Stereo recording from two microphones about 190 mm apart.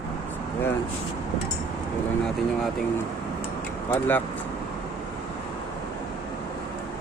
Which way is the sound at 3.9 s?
10° left (ahead or behind).